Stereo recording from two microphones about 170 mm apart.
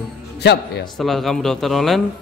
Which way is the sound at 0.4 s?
80° left.